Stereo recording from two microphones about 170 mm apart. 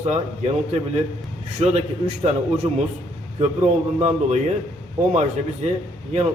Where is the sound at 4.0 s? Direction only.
40° right (ahead or behind).